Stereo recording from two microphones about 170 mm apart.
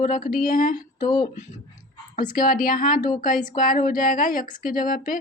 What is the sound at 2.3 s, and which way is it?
Speech, 55° left (ahead or behind).